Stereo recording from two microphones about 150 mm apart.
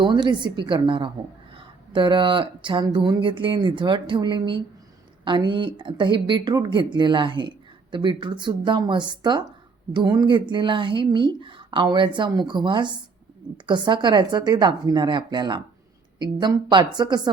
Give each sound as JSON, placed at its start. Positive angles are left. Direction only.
{"t": 0.0, "sound": "a woman's voice", "side_deg": -30}